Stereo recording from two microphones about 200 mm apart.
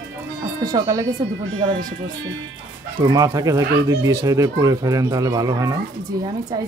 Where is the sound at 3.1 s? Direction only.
20° right (ahead or behind).